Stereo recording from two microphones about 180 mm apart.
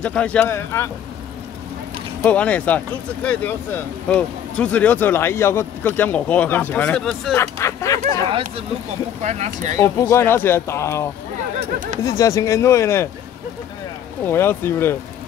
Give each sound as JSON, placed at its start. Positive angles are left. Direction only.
{"t": 0.0, "sound": "speech", "side_deg": 5}
{"t": 2.2, "sound": "speech", "side_deg": 5}
{"t": 7.3, "sound": "speech", "side_deg": 15}
{"t": 8.3, "sound": "speech", "side_deg": -30}
{"t": 9.2, "sound": "speech", "side_deg": -40}
{"t": 9.8, "sound": "speech", "side_deg": 15}
{"t": 14.2, "sound": "speech", "side_deg": 10}